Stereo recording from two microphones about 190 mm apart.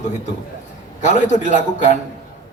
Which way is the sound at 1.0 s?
40° left (ahead or behind).